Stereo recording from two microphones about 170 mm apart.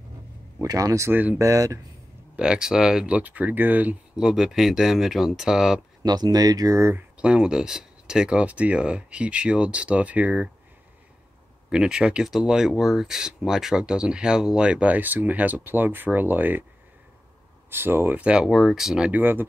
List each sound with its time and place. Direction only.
0.6 s speech: 20° right (ahead or behind)
2.3 s speech: 5° right (ahead or behind)
6.0 s speech: 25° right (ahead or behind)
11.7 s speech: 5° right (ahead or behind)
17.6 s speech: 15° right (ahead or behind)